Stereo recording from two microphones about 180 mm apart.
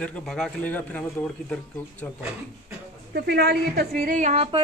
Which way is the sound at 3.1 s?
65° right (ahead or behind).